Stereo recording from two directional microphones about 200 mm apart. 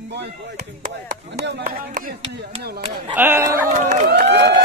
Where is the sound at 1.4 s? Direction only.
50° right (ahead or behind).